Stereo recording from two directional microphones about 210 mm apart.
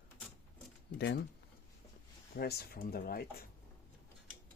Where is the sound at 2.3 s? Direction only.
45° left (ahead or behind).